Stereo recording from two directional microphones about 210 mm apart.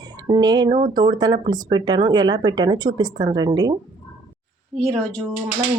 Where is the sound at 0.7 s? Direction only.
40° right (ahead or behind).